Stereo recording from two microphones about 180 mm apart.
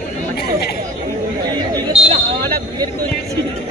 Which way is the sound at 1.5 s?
25° right (ahead or behind).